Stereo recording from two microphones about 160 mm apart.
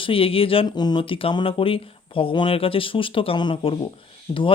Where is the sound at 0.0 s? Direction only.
35° left (ahead or behind).